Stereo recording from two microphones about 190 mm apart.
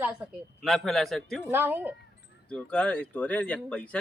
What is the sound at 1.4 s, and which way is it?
Speech, 10° right (ahead or behind).